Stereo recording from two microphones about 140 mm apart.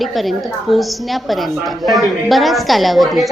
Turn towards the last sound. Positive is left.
turn(degrees=0)  # may be behind; listen again after turning